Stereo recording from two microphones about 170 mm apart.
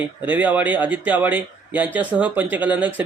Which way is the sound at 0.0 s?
10° right (ahead or behind).